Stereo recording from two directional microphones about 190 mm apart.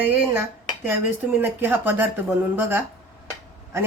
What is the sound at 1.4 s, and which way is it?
Speech, 10° right (ahead or behind).